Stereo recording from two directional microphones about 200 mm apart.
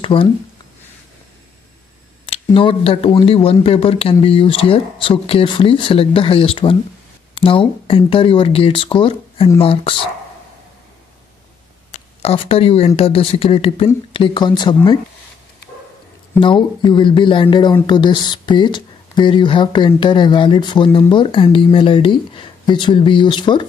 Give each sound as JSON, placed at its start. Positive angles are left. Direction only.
{"t": 0.0, "sound": "speech", "side_deg": 25}
{"t": 2.2, "sound": "speech", "side_deg": 30}
{"t": 11.9, "sound": "speech", "side_deg": 30}
{"t": 16.3, "sound": "speech", "side_deg": 25}